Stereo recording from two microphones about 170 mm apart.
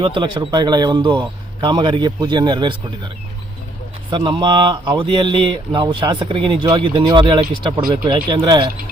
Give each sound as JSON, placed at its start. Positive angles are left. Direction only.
{"t": 0.0, "sound": "speech", "side_deg": -30}
{"t": 4.1, "sound": "speech", "side_deg": -30}